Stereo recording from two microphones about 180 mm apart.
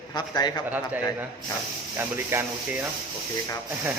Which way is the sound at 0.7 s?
10° right (ahead or behind).